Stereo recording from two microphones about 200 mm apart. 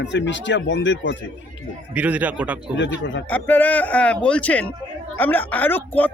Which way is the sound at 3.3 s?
10° left (ahead or behind).